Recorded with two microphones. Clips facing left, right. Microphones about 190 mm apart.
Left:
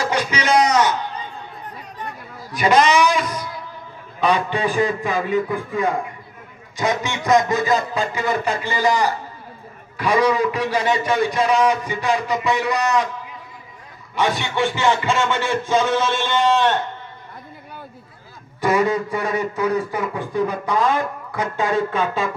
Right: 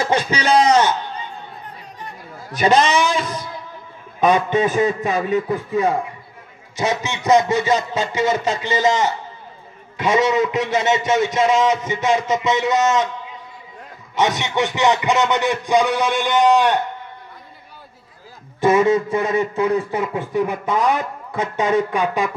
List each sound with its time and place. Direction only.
0.0 s a sound: 25° right (ahead or behind)
2.6 s a man's voice: 25° right (ahead or behind)
18.6 s a man's voice: 25° right (ahead or behind)